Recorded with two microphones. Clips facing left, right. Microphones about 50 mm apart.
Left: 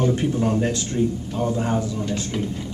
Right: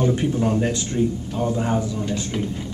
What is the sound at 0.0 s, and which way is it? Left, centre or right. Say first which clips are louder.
Speech: even; centre.